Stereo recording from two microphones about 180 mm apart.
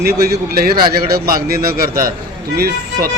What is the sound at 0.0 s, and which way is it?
A man's voice, 60° right (ahead or behind).